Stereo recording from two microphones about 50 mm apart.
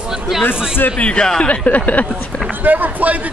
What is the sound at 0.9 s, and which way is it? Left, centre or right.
Speech, left.